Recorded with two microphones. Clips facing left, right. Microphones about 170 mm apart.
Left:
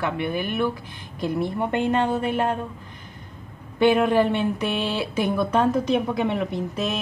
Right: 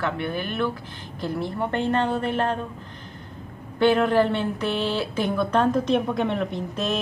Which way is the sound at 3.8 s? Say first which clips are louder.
Left 1 dB; 15° left (ahead or behind).